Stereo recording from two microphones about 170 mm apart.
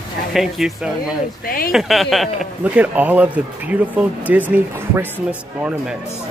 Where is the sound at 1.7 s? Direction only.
Centre (ahead or behind).